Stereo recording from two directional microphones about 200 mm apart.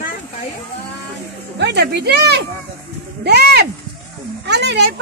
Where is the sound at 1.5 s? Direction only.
55° right (ahead or behind).